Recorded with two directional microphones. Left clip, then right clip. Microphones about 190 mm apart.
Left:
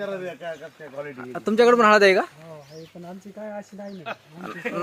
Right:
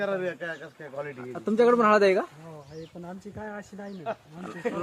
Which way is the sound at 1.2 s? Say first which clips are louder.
Left 4 dB; 35° left (ahead or behind).